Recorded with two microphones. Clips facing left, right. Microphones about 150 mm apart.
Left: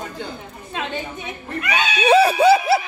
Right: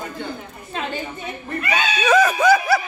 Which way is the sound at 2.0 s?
30° left (ahead or behind).